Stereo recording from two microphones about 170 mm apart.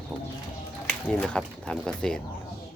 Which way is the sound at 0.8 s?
5° left (ahead or behind).